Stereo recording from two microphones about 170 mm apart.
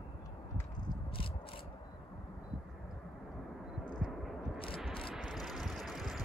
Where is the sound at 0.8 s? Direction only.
30° left (ahead or behind).